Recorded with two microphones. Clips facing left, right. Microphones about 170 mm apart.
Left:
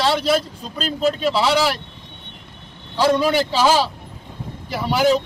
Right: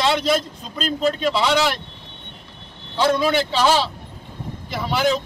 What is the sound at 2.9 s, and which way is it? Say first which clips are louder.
A man's voice: left 1 dB; 10° left (ahead or behind).